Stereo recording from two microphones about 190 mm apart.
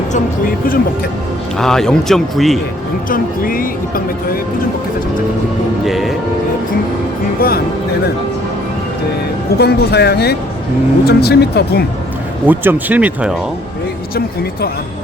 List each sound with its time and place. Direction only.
0.1 s speech: 45° left (ahead or behind)
1.5 s speech: centre (ahead or behind)
3.1 s speech: 50° left (ahead or behind)
5.8 s speech: centre (ahead or behind)
9.6 s speech: 60° left (ahead or behind)
12.5 s speech: 10° right (ahead or behind)